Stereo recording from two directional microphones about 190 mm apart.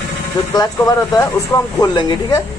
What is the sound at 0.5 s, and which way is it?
A man's voice, 20° left (ahead or behind).